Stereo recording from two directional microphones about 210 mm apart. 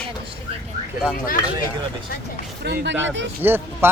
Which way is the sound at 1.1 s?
40° left (ahead or behind).